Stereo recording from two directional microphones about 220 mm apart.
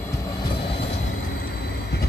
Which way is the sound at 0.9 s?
50° left (ahead or behind).